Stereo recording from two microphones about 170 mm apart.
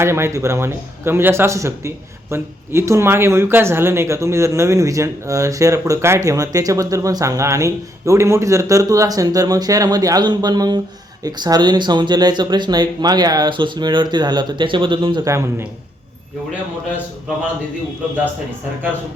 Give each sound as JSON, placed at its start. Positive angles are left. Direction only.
{"t": 0.0, "sound": "a man's voice", "side_deg": -15}